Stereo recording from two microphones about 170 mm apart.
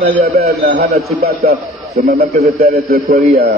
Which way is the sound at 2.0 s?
65° right (ahead or behind).